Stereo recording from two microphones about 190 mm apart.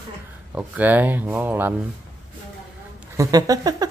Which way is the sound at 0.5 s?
10° right (ahead or behind).